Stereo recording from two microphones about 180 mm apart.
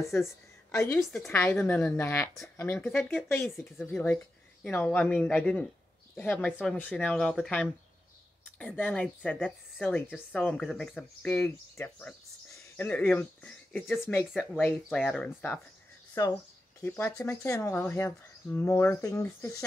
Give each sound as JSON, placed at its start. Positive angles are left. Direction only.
{"t": 0.7, "sound": "a woman's voice", "side_deg": 15}
{"t": 0.9, "sound": "a woman's voice", "side_deg": 0}
{"t": 1.3, "sound": "speech", "side_deg": 10}
{"t": 3.5, "sound": "a woman's voice", "side_deg": 0}
{"t": 16.8, "sound": "speech", "side_deg": 15}